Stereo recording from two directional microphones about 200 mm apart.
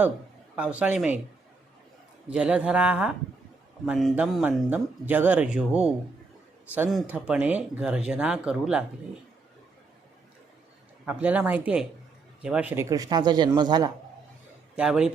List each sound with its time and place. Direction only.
0.5 s speech: 5° right (ahead or behind)
2.2 s speech: 5° right (ahead or behind)
6.9 s speech: 5° right (ahead or behind)
11.0 s a man's voice: 5° right (ahead or behind)
14.8 s speech: 5° right (ahead or behind)